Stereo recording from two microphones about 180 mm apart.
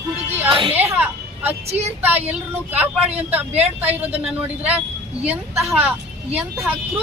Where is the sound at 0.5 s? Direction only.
30° right (ahead or behind).